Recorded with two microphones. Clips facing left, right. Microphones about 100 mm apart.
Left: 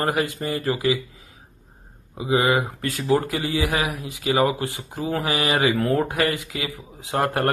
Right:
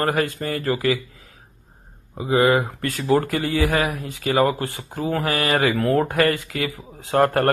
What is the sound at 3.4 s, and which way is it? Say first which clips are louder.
Speech: right 3 dB; 15° left (ahead or behind).